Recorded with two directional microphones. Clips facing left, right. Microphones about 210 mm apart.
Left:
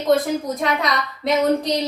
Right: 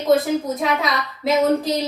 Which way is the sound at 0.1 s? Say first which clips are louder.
Right 3 dB; 5° right (ahead or behind).